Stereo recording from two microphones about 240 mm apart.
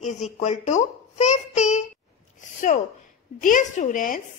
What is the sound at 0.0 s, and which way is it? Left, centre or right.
A child's voice, left.